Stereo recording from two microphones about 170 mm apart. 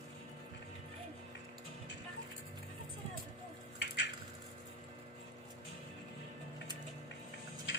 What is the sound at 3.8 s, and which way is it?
Squish, 90° left.